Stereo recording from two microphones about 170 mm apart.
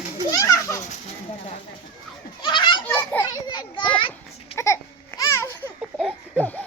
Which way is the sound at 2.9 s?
10° left (ahead or behind).